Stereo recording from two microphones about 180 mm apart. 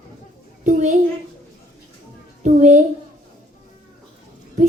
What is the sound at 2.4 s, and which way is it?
Speech, 45° right (ahead or behind).